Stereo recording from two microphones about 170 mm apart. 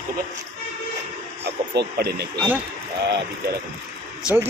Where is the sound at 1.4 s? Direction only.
75° right (ahead or behind).